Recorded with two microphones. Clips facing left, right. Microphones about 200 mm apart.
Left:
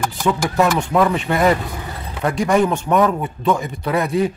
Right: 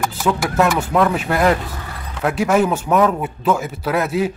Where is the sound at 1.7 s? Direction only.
15° left (ahead or behind).